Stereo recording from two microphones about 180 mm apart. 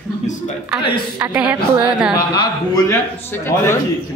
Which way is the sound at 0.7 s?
5° right (ahead or behind).